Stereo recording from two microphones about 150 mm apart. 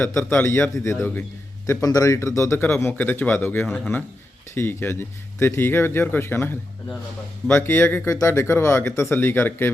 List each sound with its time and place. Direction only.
0.0 s speech: 15° left (ahead or behind)